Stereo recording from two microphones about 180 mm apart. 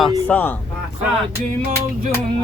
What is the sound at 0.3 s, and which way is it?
Speech, 10° left (ahead or behind).